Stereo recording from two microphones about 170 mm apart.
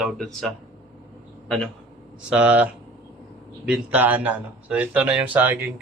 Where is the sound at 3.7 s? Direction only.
10° right (ahead or behind).